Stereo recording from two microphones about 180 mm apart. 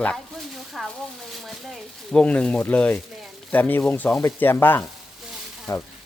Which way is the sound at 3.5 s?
10° left (ahead or behind).